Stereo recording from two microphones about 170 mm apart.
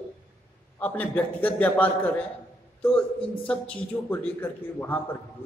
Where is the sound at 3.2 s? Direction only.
30° left (ahead or behind).